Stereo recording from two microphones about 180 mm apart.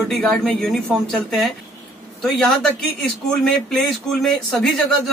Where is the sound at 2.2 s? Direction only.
5° left (ahead or behind).